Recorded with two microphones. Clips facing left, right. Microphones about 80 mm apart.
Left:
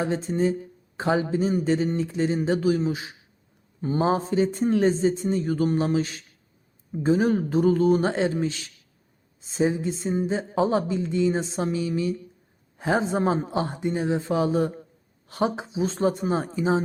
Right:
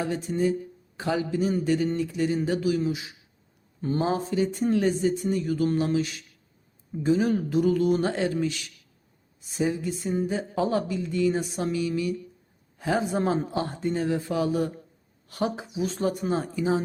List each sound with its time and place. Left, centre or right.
0.0 s speech: left
3.8 s speech: centre; by 7.9 s left
7.9 s speech: left